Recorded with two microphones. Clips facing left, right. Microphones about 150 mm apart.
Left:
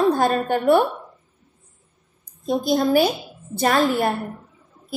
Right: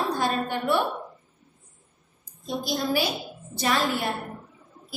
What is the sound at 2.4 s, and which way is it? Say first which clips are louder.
A woman's voice: left 8 dB; 50° left (ahead or behind).